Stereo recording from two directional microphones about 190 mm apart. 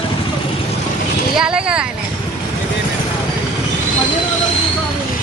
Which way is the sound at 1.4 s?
5° right (ahead or behind).